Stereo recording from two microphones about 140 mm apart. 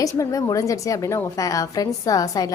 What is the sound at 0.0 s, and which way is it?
A woman's voice, 25° left (ahead or behind).